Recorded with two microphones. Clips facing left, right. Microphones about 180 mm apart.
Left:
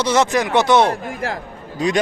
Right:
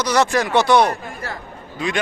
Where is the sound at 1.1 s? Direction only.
90° left.